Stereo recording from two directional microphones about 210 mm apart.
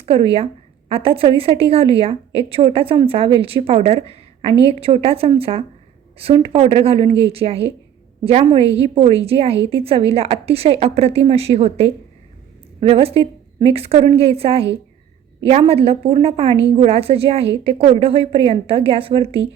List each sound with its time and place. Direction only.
0.0 s a woman's voice: 30° right (ahead or behind)